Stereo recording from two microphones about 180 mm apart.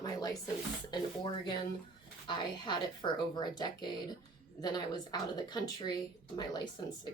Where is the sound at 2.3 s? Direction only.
25° left (ahead or behind).